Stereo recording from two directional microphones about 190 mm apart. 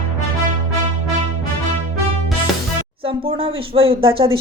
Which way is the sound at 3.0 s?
30° right (ahead or behind).